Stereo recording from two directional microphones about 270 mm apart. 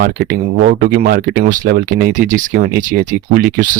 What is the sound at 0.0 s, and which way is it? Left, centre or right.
Speech, right.